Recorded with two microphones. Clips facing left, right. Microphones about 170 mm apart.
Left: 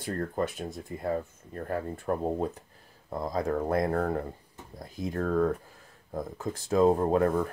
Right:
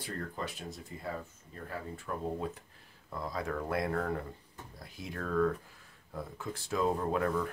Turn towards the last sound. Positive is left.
turn(degrees=40)  # may be behind; listen again after turning